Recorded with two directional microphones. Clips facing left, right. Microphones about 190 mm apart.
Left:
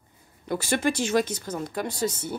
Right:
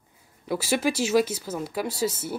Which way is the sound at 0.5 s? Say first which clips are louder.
Even; 5° right (ahead or behind).